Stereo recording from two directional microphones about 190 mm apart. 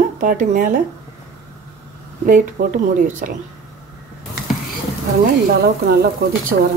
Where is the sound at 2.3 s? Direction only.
45° right (ahead or behind).